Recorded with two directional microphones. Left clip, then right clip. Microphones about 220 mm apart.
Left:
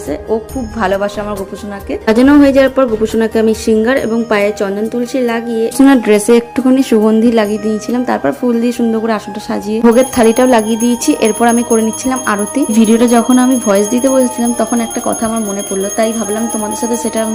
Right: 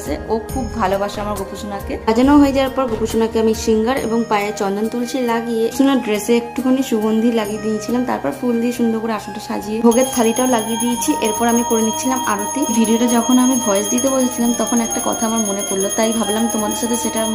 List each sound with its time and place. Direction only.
0.8 s jingle bell: 15° left (ahead or behind)
5.7 s speech: 25° left (ahead or behind)
11.0 s jingle bell: 20° left (ahead or behind)